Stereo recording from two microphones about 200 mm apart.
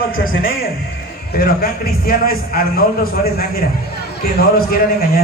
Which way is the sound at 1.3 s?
50° left (ahead or behind).